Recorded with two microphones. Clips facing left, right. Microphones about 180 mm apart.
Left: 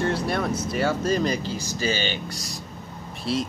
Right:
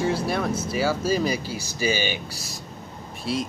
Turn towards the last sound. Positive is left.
turn(degrees=0)  # may be behind; listen again after turning